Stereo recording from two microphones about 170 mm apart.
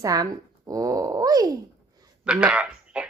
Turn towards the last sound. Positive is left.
turn(degrees=-5)  # may be behind; listen again after turning